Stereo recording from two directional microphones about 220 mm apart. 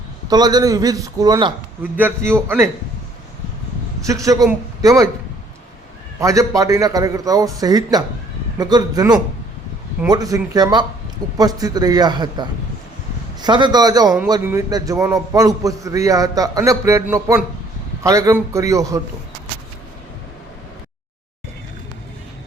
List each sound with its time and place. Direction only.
0.3 s a man's voice: 15° right (ahead or behind)
1.8 s a man's voice: 10° right (ahead or behind)
4.0 s a man's voice: 15° right (ahead or behind)
6.1 s a man's voice: 15° right (ahead or behind)